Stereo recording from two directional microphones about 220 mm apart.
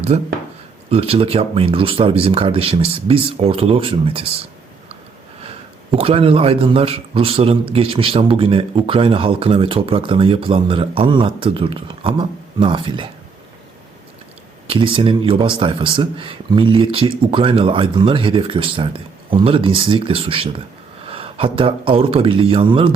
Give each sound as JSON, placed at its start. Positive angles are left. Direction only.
{"t": 0.1, "sound": "a man's voice", "side_deg": -30}
{"t": 6.0, "sound": "a man's voice", "side_deg": -25}
{"t": 14.7, "sound": "a man's voice", "side_deg": -25}